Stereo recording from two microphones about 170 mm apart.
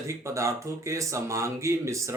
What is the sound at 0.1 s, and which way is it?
Speech, 15° right (ahead or behind).